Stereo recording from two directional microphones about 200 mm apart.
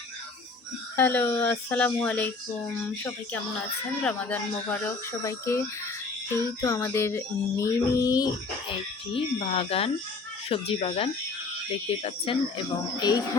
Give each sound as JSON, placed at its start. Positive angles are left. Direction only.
{"t": 0.9, "sound": "child singing", "side_deg": 10}
{"t": 4.0, "sound": "child singing", "side_deg": 5}
{"t": 9.1, "sound": "speech", "side_deg": 30}